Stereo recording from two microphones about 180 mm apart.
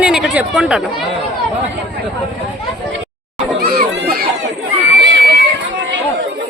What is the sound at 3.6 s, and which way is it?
Children playing, 65° right (ahead or behind).